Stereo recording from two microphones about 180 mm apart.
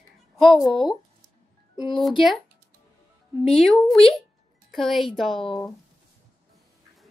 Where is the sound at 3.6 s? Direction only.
Centre (ahead or behind).